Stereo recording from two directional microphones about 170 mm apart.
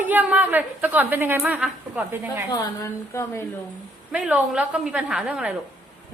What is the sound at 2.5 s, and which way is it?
Speech, 20° left (ahead or behind).